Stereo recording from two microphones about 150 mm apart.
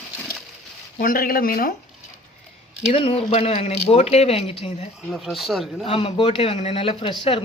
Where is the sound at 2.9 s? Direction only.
40° left (ahead or behind).